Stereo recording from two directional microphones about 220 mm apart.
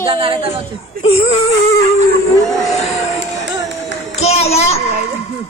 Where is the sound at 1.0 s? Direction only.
25° left (ahead or behind).